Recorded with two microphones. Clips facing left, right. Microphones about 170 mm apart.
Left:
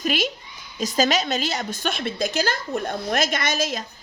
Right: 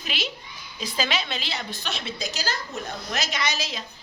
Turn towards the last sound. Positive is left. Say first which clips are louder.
# left 5 dB
turn(degrees=50)  # may be behind; listen again after turning